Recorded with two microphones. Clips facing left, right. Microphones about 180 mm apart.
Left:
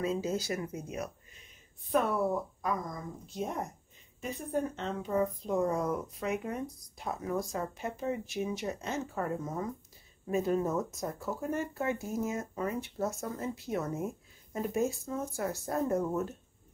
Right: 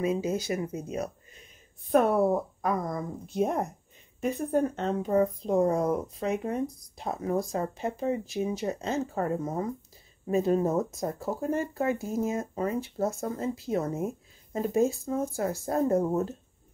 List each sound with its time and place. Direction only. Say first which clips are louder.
0.0 s speech: right 4 dB; 15° right (ahead or behind)
1.9 s speech: right 6 dB; 50° right (ahead or behind); by 16.3 s 30° right (ahead or behind)